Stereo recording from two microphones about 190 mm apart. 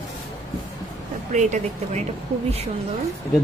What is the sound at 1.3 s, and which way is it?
Speech, 40° right (ahead or behind).